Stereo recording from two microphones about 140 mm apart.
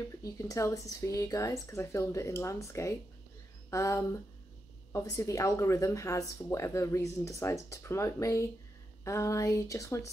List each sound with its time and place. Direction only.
0.2 s speech: 25° left (ahead or behind)